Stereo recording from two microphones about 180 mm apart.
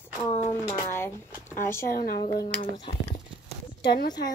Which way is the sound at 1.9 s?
55° left (ahead or behind).